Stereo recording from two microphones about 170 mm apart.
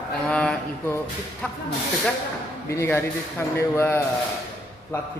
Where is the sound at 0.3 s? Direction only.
5° left (ahead or behind).